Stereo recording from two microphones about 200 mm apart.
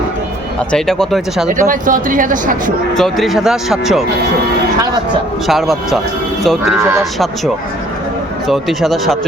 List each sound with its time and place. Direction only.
0.7 s speech: centre (ahead or behind)
1.5 s speech: 40° right (ahead or behind)
2.9 s speech: centre (ahead or behind)
5.5 s speech: centre (ahead or behind)
6.7 s a man's voice: 15° right (ahead or behind)
7.0 s speech: centre (ahead or behind)